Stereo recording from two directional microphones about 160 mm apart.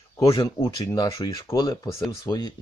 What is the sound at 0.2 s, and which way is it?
Speech, 25° left (ahead or behind).